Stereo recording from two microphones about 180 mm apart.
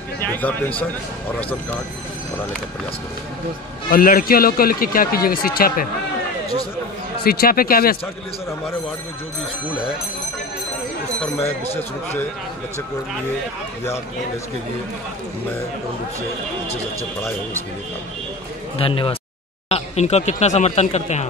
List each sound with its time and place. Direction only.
0.2 s a man's voice: 10° left (ahead or behind)
3.9 s a man's voice: 50° left (ahead or behind)
7.2 s a man's voice: 55° left (ahead or behind)
11.4 s speech: 10° left (ahead or behind)
18.8 s speech: 30° left (ahead or behind)